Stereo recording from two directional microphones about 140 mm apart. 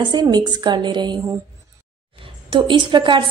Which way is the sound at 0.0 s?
30° right (ahead or behind).